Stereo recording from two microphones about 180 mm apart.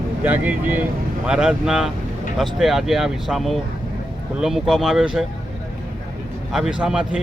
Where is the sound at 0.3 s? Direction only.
10° right (ahead or behind).